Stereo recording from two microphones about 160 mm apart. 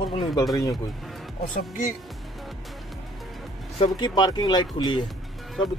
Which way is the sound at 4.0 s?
25° left (ahead or behind).